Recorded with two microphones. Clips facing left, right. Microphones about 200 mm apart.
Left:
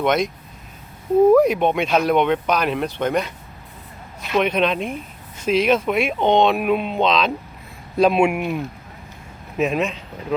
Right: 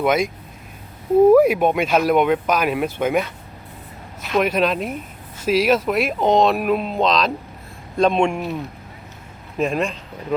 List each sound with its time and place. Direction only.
0.0 s speech: 5° right (ahead or behind)
1.3 s speech: 5° right (ahead or behind)
9.6 s speech: 5° left (ahead or behind)